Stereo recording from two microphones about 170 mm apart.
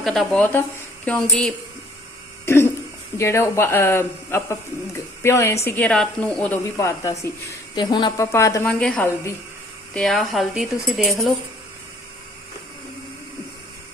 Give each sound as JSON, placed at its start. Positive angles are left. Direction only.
{"t": 0.0, "sound": "a woman's voice", "side_deg": 0}
{"t": 2.5, "sound": "throat clearing", "side_deg": 15}
{"t": 3.2, "sound": "a woman's voice", "side_deg": 15}
{"t": 8.6, "sound": "a woman's voice", "side_deg": 5}